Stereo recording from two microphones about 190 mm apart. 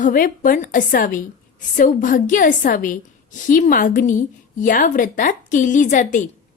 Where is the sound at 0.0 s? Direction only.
50° left (ahead or behind).